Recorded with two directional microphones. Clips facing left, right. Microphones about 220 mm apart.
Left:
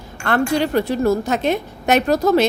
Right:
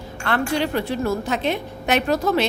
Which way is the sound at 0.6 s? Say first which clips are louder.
Left 4 dB; 40° left (ahead or behind).